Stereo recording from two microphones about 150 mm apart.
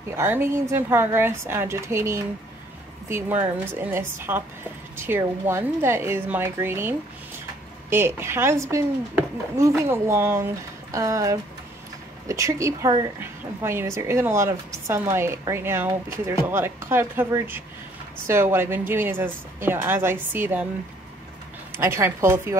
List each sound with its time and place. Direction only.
0.1 s a woman's voice: 15° right (ahead or behind)
21.7 s a woman's voice: 15° right (ahead or behind)